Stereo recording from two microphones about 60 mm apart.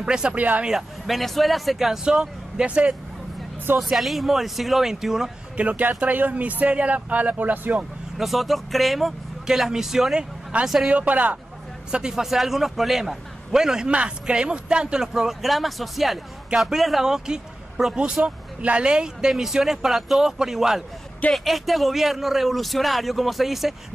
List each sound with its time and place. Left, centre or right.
0.0 s speech: centre
0.4 s speech: right
0.7 s speech: centre
3.8 s speech: centre
5.6 s speech: right
8.2 s speech: centre
10.5 s speech: right
11.9 s a man's voice: centre
18.2 s speech: right; by 23.7 s centre